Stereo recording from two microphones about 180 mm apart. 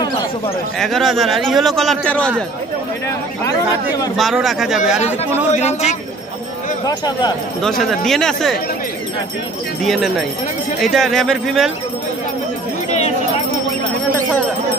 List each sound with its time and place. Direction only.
0.7 s a man's voice: centre (ahead or behind)
4.2 s a man's voice: centre (ahead or behind)
5.5 s speech: 40° left (ahead or behind)
6.9 s speech: 20° left (ahead or behind)
7.6 s a man's voice: centre (ahead or behind)
9.8 s a man's voice: centre (ahead or behind)